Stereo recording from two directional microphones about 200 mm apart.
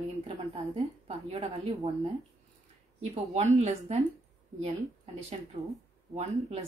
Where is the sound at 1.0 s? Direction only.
30° right (ahead or behind).